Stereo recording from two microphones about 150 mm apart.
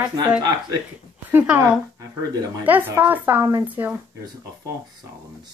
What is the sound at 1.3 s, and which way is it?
Speech, 10° right (ahead or behind).